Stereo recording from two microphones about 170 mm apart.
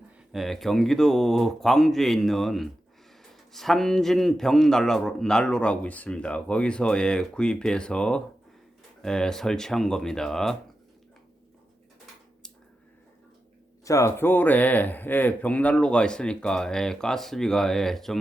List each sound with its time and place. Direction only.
0.3 s a man's voice: centre (ahead or behind)
13.8 s a man's voice: 20° left (ahead or behind); by 18.2 s centre (ahead or behind)